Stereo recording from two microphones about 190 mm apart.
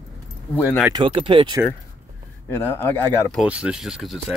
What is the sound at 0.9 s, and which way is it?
Speech, 25° right (ahead or behind).